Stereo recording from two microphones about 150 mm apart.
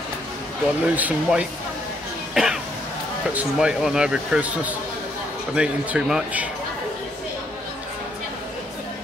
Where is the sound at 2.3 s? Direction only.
5° right (ahead or behind).